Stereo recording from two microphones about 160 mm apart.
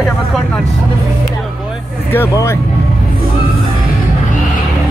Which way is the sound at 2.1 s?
15° left (ahead or behind).